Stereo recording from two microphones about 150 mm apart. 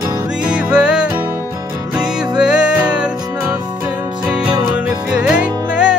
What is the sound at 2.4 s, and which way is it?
Music, 5° right (ahead or behind).